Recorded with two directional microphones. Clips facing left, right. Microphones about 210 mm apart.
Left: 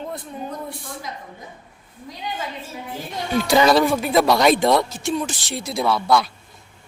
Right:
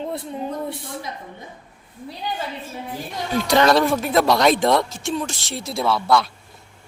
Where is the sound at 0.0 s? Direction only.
30° right (ahead or behind).